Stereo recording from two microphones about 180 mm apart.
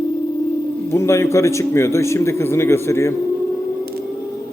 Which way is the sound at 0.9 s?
15° left (ahead or behind).